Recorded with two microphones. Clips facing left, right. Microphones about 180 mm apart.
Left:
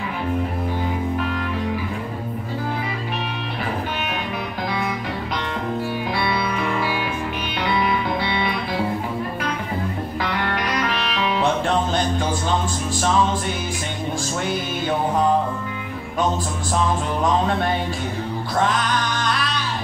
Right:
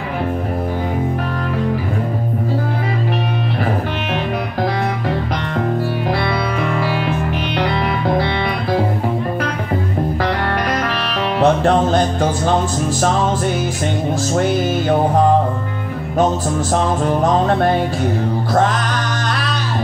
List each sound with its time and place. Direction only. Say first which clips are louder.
6.1 s music: right 4 dB; 50° right (ahead or behind)
10.2 s music: right 5 dB; 45° right (ahead or behind)
14.3 s music: right 8 dB; 45° right (ahead or behind)
16.7 s music: right 4 dB; 45° right (ahead or behind)